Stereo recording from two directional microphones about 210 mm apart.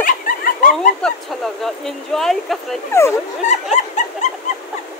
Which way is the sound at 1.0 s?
5° left (ahead or behind).